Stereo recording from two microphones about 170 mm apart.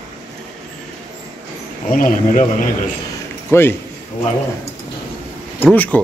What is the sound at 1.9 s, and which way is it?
Speech, 55° left (ahead or behind).